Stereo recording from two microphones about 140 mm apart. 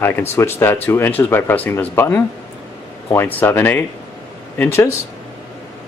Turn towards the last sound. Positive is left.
turn(degrees=15)  # may be behind; listen again after turning